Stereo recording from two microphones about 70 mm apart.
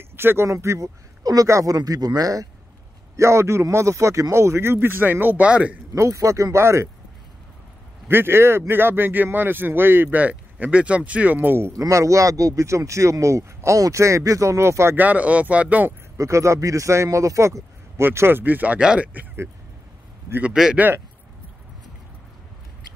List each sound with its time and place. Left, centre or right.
0.1 s speech: right
0.5 s speech: right
1.2 s speech: right
1.5 s speech: right
1.8 s speech: right
3.2 s speech: right; by 5.8 s centre
5.9 s speech: right
8.1 s speech: right
11.7 s speech: right
15.0 s speech: right
16.2 s speech: right
18.0 s speech: right
18.8 s speech: centre
20.6 s speech: centre